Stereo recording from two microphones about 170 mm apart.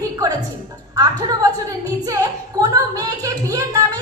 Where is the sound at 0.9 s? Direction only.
20° right (ahead or behind).